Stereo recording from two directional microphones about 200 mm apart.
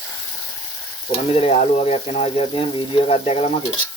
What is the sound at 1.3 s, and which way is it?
Speech, 30° left (ahead or behind).